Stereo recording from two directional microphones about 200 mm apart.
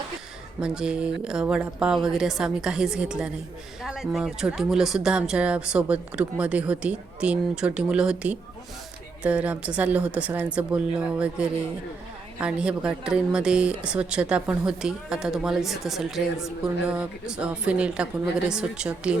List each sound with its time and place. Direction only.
0.6 s speech: 5° right (ahead or behind)